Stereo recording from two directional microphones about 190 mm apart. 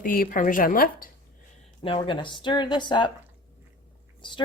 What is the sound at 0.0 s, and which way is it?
A woman's voice, 45° left (ahead or behind).